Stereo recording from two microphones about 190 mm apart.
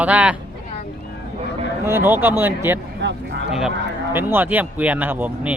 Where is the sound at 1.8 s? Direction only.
10° right (ahead or behind).